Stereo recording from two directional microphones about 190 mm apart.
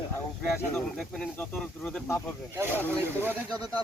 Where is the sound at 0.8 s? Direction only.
5° left (ahead or behind).